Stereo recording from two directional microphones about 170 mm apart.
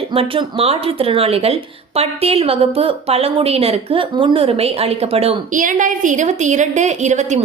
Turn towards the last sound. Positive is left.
turn(degrees=-45)  # may be behind; listen again after turning